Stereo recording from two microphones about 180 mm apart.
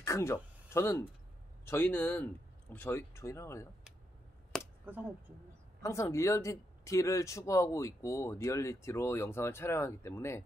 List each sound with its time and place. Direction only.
0.0 s a man's voice: 15° left (ahead or behind)
4.5 s a sound: 5° right (ahead or behind)
5.8 s a man's voice: 15° left (ahead or behind)